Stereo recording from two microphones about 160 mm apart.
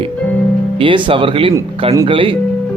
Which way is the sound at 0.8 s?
30° right (ahead or behind).